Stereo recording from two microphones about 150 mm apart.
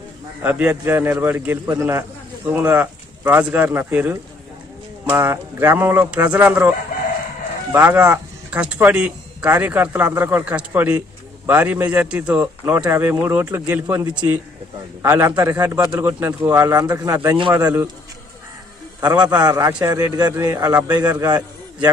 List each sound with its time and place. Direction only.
0.4 s a man's voice: 10° right (ahead or behind)
7.7 s a man's voice: 10° right (ahead or behind)
18.9 s speech: 25° right (ahead or behind)